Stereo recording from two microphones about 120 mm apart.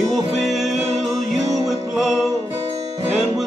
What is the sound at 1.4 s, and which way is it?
Music, 30° right (ahead or behind).